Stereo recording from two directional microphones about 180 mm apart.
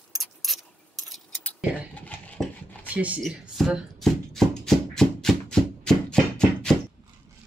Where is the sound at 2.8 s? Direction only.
10° right (ahead or behind).